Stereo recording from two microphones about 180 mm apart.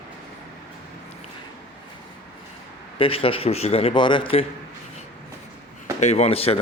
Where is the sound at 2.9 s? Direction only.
30° left (ahead or behind).